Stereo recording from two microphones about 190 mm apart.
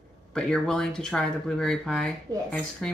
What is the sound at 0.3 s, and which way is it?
Speech, 5° left (ahead or behind).